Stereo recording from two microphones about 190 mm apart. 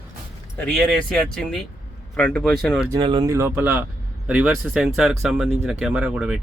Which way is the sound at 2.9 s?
25° right (ahead or behind).